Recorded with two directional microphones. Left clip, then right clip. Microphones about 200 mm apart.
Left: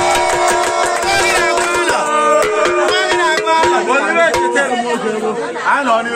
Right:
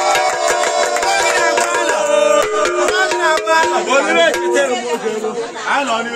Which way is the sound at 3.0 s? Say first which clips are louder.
Left 1 dB; 50° right (ahead or behind).